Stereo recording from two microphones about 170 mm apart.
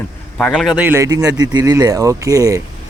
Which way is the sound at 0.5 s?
5° right (ahead or behind).